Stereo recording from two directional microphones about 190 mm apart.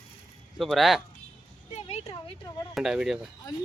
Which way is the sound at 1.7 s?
35° left (ahead or behind).